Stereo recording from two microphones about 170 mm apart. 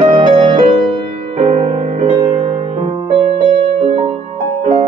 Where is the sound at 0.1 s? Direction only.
30° right (ahead or behind).